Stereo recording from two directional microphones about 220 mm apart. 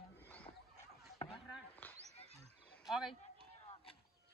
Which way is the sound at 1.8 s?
10° left (ahead or behind).